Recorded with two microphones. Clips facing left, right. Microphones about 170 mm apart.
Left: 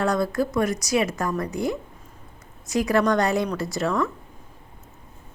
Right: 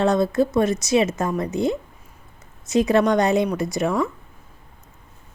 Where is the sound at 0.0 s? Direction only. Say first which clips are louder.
Right 4 dB; 25° right (ahead or behind).